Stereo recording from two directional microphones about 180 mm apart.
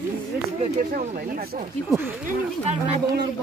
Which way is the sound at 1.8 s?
10° right (ahead or behind).